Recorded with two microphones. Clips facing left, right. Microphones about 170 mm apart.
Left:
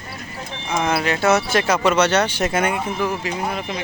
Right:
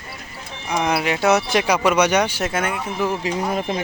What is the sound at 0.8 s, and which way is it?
Speech, 15° right (ahead or behind).